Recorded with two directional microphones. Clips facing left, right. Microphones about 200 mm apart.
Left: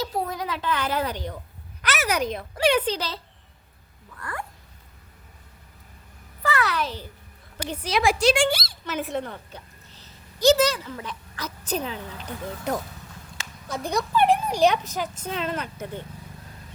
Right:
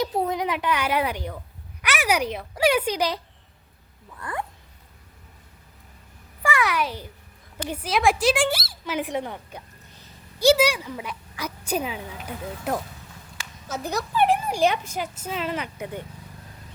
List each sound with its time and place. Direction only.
0.0 s speech: 20° right (ahead or behind)
4.2 s speech: 20° right (ahead or behind)
6.4 s a sound: 15° right (ahead or behind)
7.7 s a woman's voice: 5° right (ahead or behind)